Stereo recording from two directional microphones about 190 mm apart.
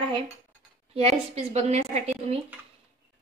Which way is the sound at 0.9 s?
30° right (ahead or behind).